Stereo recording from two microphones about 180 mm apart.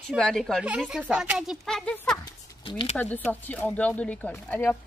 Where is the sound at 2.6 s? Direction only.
30° left (ahead or behind).